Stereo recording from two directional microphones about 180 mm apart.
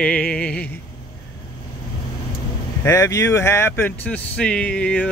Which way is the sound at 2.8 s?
15° left (ahead or behind).